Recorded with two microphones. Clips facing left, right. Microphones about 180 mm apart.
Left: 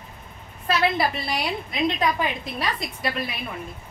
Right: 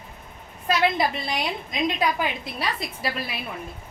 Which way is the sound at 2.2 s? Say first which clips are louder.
Left 1 dB; centre (ahead or behind).